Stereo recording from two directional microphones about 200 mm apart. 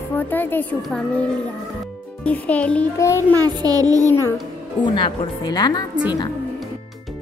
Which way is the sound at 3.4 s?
20° right (ahead or behind).